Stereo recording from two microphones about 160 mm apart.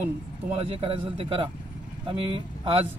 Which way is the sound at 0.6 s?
35° right (ahead or behind).